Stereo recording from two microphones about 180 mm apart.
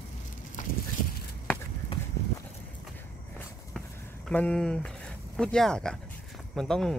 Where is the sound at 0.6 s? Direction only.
45° left (ahead or behind).